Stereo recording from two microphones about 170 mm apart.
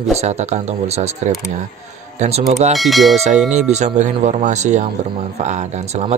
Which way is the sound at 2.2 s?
40° right (ahead or behind).